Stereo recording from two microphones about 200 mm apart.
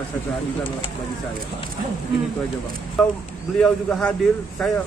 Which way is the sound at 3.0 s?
5° left (ahead or behind).